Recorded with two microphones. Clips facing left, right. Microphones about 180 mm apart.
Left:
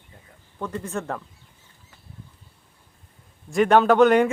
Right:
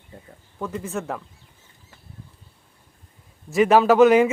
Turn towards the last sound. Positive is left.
turn(degrees=-5)  # may be behind; listen again after turning